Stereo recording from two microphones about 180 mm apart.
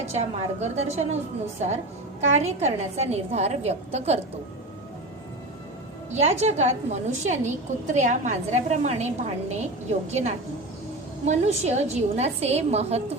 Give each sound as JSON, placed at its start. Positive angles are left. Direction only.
{"t": 0.1, "sound": "a woman's voice", "side_deg": -35}
{"t": 6.1, "sound": "a woman's voice", "side_deg": -40}